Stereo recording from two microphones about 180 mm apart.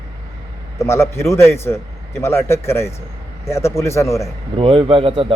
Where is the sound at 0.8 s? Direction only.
15° left (ahead or behind).